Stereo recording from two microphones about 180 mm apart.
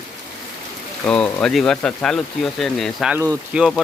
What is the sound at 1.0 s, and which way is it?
Speech, 5° left (ahead or behind).